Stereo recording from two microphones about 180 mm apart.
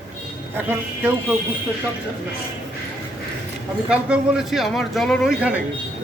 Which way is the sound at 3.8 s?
5° right (ahead or behind).